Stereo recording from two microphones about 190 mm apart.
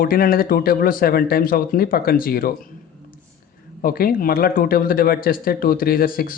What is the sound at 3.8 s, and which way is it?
Speech, 50° left (ahead or behind).